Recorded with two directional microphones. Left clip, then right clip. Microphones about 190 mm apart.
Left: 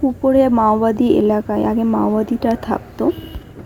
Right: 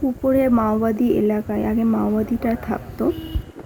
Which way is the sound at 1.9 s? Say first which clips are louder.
Left 5 dB; 15° left (ahead or behind).